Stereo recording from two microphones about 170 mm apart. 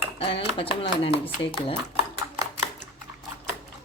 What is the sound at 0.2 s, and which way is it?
Speech, 30° left (ahead or behind).